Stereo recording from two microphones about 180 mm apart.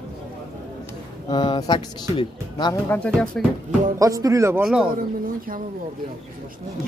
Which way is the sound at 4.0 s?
20° right (ahead or behind).